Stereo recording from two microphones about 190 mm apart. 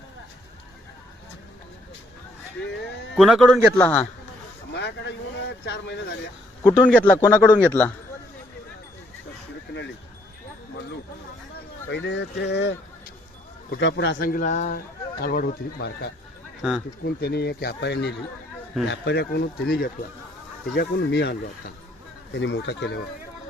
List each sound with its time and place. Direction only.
2.8 s a sound: centre (ahead or behind)
3.8 s speech: 10° left (ahead or behind)
4.7 s vehicle: 65° left (ahead or behind)
6.6 s a man's voice: 20° left (ahead or behind)
6.8 s speech: 5° left (ahead or behind)
11.9 s a man's voice: 65° left (ahead or behind); by 14.8 s 40° left (ahead or behind)
15.2 s speech: 55° left (ahead or behind)
16.6 s speech: centre (ahead or behind)
17.0 s speech: 60° left (ahead or behind)
20.7 s speech: 65° left (ahead or behind)